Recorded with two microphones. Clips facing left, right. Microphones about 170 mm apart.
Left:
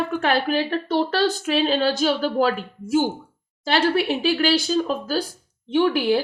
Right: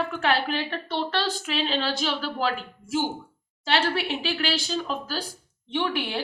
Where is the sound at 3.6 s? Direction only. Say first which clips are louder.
Left 5 dB; 40° left (ahead or behind).